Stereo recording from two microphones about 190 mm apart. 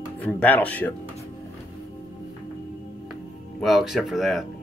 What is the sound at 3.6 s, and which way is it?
Speech, centre (ahead or behind).